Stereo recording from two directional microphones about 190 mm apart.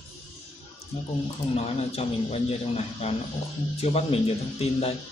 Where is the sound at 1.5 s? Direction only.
35° left (ahead or behind).